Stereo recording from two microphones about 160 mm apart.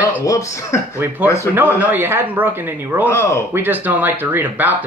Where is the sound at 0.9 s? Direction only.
10° right (ahead or behind).